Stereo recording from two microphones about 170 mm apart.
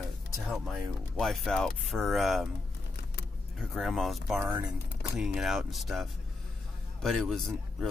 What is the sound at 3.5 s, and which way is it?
A man's voice, centre (ahead or behind).